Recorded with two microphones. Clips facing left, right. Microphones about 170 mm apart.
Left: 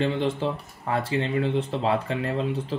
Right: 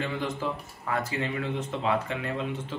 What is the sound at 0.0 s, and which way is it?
Speech, 30° left (ahead or behind).